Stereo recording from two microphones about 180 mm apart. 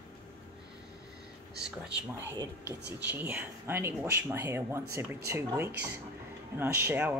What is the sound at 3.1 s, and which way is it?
Speech, 10° right (ahead or behind).